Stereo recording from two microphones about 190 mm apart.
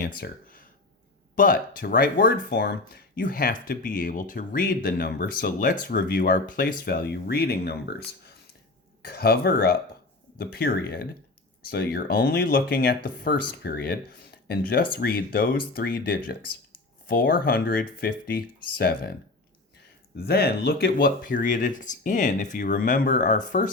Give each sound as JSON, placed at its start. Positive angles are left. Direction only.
{"t": 0.2, "sound": "speech", "side_deg": 45}
{"t": 20.2, "sound": "speech", "side_deg": 60}